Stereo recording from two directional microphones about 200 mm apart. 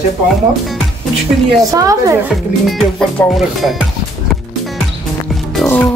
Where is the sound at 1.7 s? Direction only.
15° right (ahead or behind).